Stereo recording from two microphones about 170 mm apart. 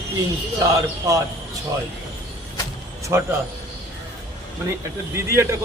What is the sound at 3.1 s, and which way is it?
Speech, 15° right (ahead or behind).